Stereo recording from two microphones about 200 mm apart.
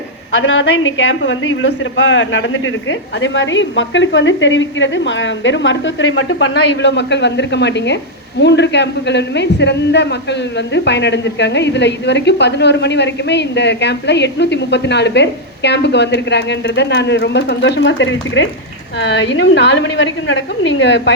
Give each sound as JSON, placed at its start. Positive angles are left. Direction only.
{"t": 0.3, "sound": "a woman's voice", "side_deg": 70}